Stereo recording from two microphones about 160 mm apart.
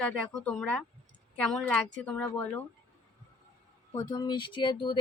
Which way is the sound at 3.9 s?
25° left (ahead or behind).